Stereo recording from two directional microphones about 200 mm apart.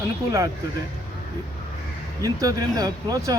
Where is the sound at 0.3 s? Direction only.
15° right (ahead or behind).